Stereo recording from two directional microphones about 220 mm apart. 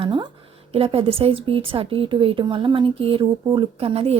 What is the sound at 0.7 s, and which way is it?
A woman's voice, 25° right (ahead or behind).